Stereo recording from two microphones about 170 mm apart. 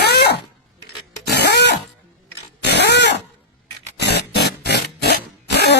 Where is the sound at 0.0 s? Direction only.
75° left (ahead or behind).